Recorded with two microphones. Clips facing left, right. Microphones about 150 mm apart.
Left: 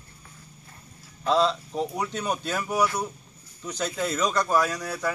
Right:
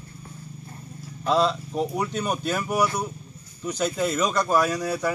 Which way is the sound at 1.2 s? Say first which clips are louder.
Right 1 dB; 10° right (ahead or behind).